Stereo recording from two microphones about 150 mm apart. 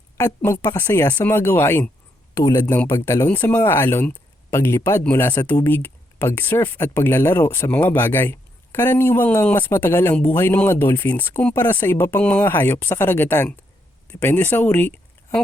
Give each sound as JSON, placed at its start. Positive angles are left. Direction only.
{"t": 0.2, "sound": "speech", "side_deg": 20}